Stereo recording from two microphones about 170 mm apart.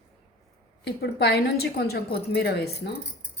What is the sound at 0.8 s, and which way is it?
A woman's voice, 75° left (ahead or behind).